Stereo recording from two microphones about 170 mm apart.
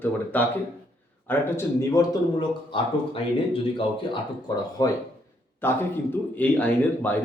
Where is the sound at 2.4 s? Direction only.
30° left (ahead or behind).